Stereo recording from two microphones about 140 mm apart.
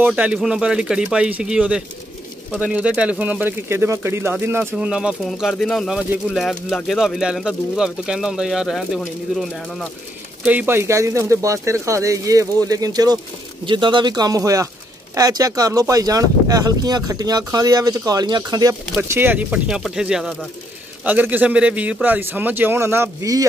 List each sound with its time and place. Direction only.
0.0 s speech: 10° right (ahead or behind)
4.7 s speech: 5° right (ahead or behind); by 18.8 s 25° right (ahead or behind)
18.9 s speech: 15° right (ahead or behind)